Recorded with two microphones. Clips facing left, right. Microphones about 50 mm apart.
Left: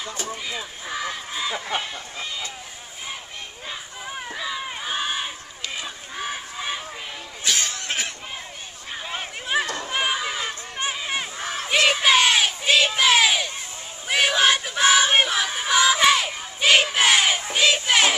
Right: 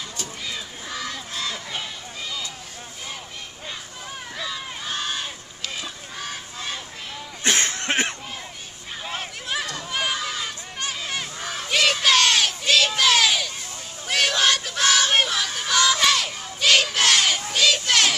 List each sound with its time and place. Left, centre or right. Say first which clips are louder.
0.3 s crowd: left 2 dB; centre
4.3 s crowd: left 2 dB; centre
5.8 s goose: left 2 dB; centre
7.4 s a sound: right 3 dB; right
9.5 s run: left 4 dB; left
14.0 s child singing: left 2 dB; centre